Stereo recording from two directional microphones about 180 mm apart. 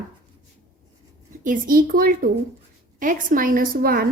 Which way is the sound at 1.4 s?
50° right (ahead or behind).